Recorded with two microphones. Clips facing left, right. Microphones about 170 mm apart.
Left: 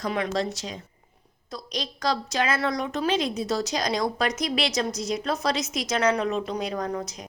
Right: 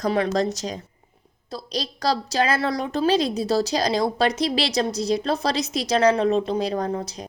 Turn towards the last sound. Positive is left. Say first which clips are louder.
# right 3 dB
turn(degrees=-30)  # may be behind; listen again after turning